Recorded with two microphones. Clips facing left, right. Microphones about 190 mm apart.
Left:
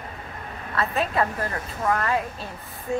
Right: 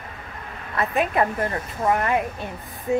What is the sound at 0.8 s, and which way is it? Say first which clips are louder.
Speech: right 3 dB; 20° right (ahead or behind).